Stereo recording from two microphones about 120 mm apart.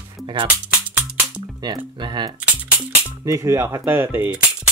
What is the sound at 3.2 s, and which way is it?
Speech, 25° right (ahead or behind).